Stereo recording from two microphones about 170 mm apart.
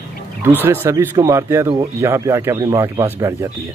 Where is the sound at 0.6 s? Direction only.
15° right (ahead or behind).